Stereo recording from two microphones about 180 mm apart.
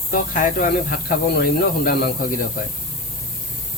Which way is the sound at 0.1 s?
50° left (ahead or behind).